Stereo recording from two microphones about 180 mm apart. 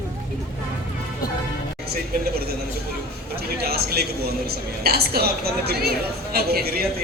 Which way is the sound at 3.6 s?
60° right (ahead or behind).